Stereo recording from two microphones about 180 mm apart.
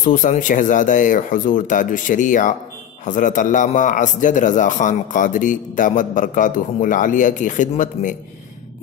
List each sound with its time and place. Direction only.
0.0 s a man's voice: 45° left (ahead or behind)